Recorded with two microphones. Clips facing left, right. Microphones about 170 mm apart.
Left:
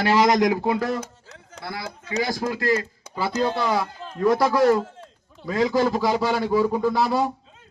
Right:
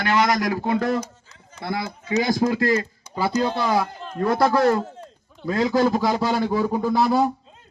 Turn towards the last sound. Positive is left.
turn(degrees=0)  # may be behind; listen again after turning